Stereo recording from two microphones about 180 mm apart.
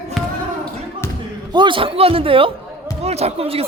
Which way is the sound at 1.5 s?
25° right (ahead or behind).